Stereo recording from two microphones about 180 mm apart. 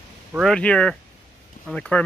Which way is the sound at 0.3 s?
Centre (ahead or behind).